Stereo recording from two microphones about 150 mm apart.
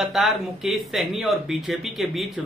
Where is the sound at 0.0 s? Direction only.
Centre (ahead or behind).